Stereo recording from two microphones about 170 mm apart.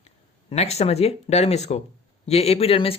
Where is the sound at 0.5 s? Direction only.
40° left (ahead or behind).